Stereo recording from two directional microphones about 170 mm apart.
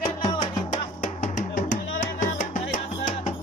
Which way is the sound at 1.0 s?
50° left (ahead or behind).